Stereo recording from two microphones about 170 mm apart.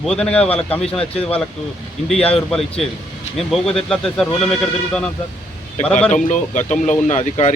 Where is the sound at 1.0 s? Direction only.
35° left (ahead or behind).